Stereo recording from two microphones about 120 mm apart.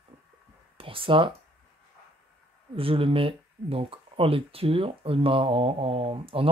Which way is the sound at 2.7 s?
50° right (ahead or behind).